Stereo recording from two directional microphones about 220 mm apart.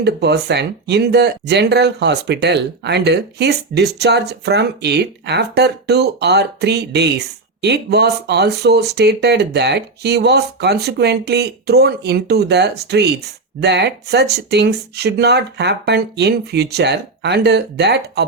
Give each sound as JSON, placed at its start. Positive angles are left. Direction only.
{"t": 0.0, "sound": "speech", "side_deg": -50}